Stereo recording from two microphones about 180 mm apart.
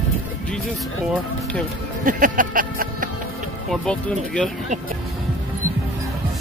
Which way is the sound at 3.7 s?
5° left (ahead or behind).